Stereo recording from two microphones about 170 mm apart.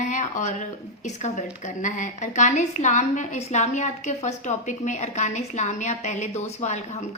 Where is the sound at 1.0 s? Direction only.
45° left (ahead or behind).